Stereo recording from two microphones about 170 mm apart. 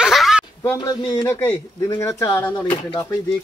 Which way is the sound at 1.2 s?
10° left (ahead or behind).